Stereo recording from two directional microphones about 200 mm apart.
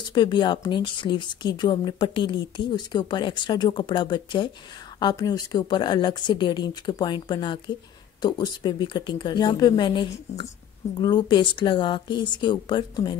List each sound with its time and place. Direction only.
0.1 s speech: 25° left (ahead or behind)